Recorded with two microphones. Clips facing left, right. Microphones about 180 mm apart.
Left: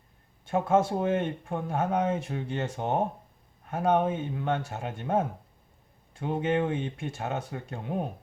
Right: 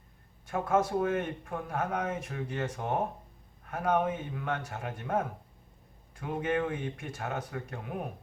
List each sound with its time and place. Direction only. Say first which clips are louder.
0.4 s speech: left 4 dB; 25° left (ahead or behind)